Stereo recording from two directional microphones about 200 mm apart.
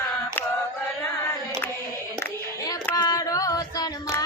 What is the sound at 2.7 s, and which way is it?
Female singing, 20° left (ahead or behind).